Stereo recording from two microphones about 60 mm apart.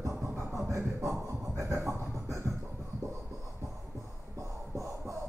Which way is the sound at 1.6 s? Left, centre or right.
Right.